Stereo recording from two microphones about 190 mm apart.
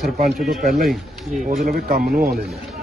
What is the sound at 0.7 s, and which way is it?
Speech, centre (ahead or behind).